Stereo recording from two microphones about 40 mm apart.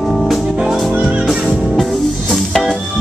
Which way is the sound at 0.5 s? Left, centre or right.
Centre.